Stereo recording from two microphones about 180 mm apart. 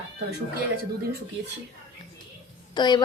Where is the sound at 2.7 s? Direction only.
25° left (ahead or behind).